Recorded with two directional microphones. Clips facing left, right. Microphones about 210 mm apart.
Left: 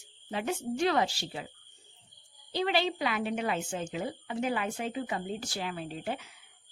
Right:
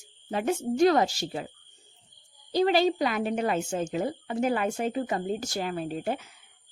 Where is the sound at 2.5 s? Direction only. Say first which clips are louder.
Right 7 dB; 40° right (ahead or behind).